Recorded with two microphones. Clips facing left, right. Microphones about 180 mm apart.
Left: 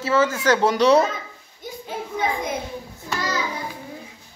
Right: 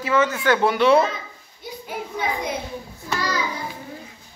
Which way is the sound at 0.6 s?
40° left (ahead or behind).